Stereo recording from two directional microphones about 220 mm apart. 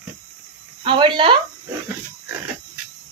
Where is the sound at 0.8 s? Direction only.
25° right (ahead or behind).